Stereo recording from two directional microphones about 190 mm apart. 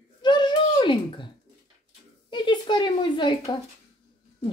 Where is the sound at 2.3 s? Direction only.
25° left (ahead or behind).